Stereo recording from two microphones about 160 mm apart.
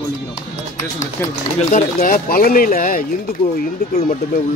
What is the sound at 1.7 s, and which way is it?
Speech, 60° left (ahead or behind).